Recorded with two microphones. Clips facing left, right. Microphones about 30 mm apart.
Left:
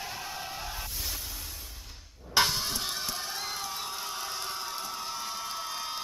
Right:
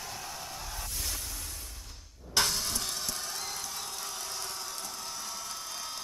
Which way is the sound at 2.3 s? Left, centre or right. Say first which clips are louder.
Left 3 dB; left.